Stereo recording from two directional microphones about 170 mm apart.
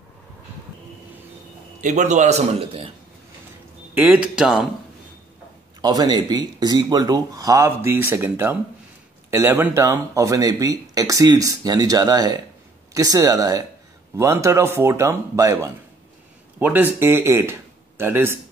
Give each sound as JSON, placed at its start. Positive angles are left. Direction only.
{"t": 1.8, "sound": "a man's voice", "side_deg": -45}
{"t": 3.9, "sound": "speech", "side_deg": -10}
{"t": 5.8, "sound": "speech", "side_deg": -25}